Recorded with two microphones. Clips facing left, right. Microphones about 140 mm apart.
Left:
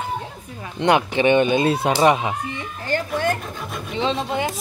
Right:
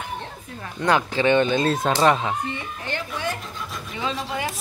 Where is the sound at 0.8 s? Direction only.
20° left (ahead or behind).